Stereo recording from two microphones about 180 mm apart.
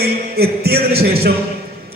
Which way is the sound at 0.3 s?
60° right (ahead or behind).